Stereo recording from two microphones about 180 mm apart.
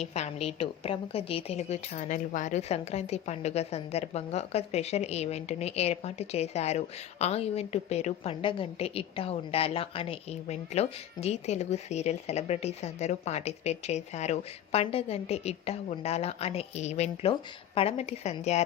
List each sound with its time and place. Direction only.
0.0 s a woman's voice: 35° left (ahead or behind)